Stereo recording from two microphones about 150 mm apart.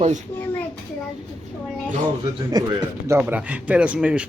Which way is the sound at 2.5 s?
25° right (ahead or behind).